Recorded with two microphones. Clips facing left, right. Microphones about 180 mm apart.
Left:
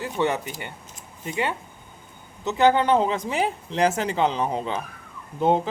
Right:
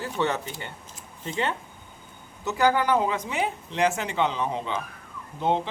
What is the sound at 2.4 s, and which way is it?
Speech, 20° left (ahead or behind).